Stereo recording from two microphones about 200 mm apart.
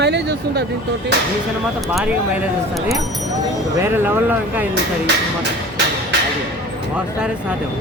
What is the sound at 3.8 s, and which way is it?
Speech, 10° right (ahead or behind).